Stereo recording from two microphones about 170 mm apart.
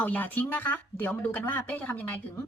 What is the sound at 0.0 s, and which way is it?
Speech, 10° left (ahead or behind).